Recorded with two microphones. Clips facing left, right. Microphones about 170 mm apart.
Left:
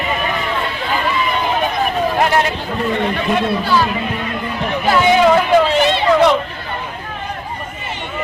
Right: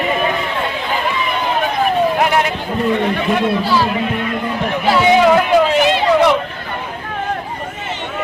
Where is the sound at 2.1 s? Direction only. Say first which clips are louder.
Even; 5° right (ahead or behind).